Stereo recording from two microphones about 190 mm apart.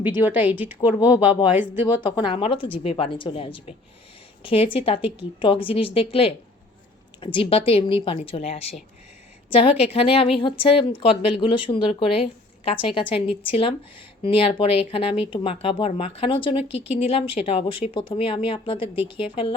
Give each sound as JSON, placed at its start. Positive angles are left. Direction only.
{"t": 0.2, "sound": "a woman's voice", "side_deg": -10}
{"t": 0.8, "sound": "speech", "side_deg": 20}